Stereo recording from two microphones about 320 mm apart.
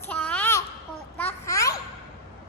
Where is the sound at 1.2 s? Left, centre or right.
Centre.